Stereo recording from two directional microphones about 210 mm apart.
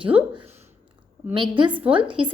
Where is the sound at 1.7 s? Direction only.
5° right (ahead or behind).